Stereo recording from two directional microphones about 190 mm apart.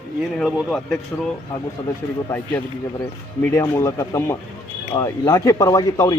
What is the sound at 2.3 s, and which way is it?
Speech, 10° left (ahead or behind).